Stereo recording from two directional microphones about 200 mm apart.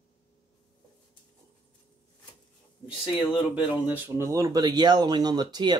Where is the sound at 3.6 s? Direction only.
5° right (ahead or behind).